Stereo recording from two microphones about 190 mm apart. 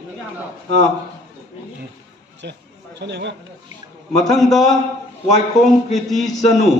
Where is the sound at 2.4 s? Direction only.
65° right (ahead or behind).